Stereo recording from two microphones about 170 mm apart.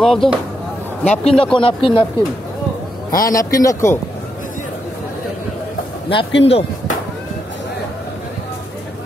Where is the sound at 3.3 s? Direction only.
15° left (ahead or behind).